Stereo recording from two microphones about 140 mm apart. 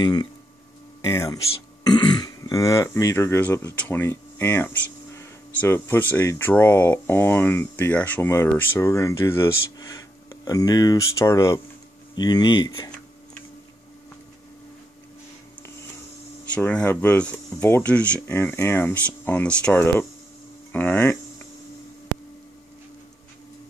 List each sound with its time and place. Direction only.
0.0 s speech: 30° left (ahead or behind)
16.5 s speech: 10° left (ahead or behind)